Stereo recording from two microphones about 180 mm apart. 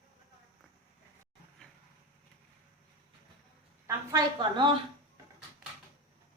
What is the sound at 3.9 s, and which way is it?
Speech, 20° right (ahead or behind).